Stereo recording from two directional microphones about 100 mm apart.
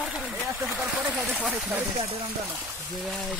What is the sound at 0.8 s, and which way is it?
Speech, 10° right (ahead or behind).